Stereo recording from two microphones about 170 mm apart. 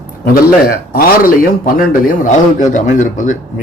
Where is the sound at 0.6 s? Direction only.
60° left (ahead or behind).